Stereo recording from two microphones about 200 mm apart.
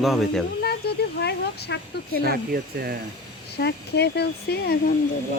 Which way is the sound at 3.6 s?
55° left (ahead or behind).